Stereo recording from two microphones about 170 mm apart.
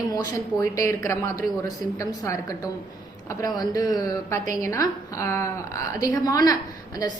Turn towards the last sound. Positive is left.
turn(degrees=20)  # may be behind; listen again after turning